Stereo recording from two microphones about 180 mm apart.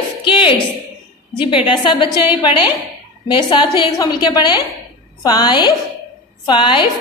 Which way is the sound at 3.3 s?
25° left (ahead or behind).